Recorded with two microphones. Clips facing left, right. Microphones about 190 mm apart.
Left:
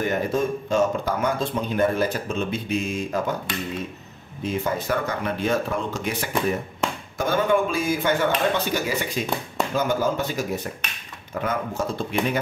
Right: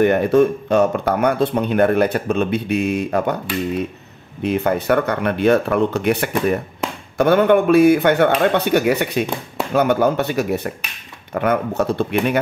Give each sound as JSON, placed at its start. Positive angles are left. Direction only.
{"t": 0.0, "sound": "speech", "side_deg": -65}
{"t": 4.4, "sound": "speech", "side_deg": -65}